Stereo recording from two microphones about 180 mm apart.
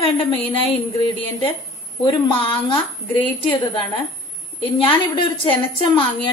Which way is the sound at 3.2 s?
10° left (ahead or behind).